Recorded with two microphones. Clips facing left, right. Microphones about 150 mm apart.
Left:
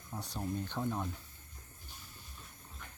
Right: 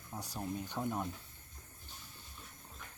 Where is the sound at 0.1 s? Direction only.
5° right (ahead or behind).